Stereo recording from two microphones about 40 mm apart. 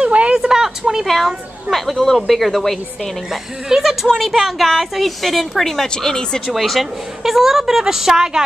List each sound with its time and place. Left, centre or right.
0.0 s a sound: right
0.4 s a sound: centre
1.0 s speech: centre
3.3 s a woman's voice: centre
5.9 s speech: centre
6.4 s a woman's voice: centre